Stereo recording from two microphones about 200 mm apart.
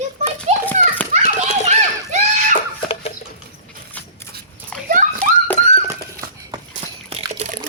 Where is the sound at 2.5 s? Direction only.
30° left (ahead or behind).